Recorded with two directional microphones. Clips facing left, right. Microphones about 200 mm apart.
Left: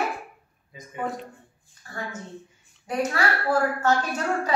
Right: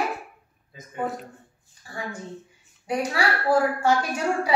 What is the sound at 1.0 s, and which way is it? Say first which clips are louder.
Speech: even; 5° right (ahead or behind).